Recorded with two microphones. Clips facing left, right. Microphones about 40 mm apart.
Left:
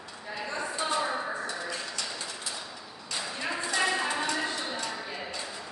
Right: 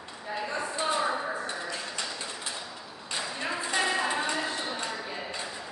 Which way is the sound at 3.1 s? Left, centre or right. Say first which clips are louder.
Right 1 dB; centre.